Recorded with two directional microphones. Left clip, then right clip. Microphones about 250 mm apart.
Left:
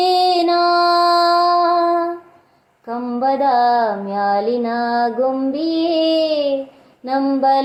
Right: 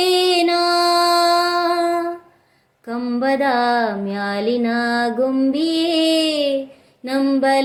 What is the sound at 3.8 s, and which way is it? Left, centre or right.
Child singing, right.